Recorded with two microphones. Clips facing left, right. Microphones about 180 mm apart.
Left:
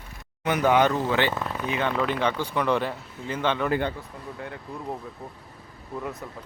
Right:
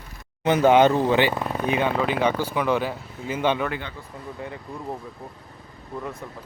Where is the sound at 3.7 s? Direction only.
45° left (ahead or behind).